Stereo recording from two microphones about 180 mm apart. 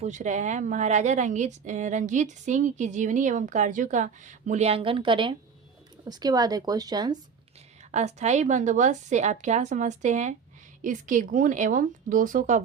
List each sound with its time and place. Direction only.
0.0 s a woman's voice: 40° right (ahead or behind); by 7.2 s 20° right (ahead or behind)
7.9 s a woman's voice: 40° right (ahead or behind)